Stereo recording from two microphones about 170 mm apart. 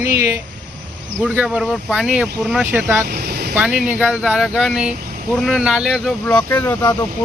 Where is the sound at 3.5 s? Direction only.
5° right (ahead or behind).